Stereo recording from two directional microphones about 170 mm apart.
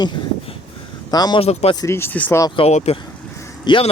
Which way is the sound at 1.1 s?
25° left (ahead or behind).